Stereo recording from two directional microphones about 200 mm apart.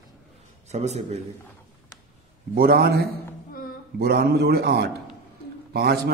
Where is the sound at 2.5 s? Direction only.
50° right (ahead or behind).